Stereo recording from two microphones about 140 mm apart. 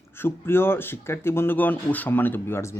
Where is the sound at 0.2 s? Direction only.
15° left (ahead or behind).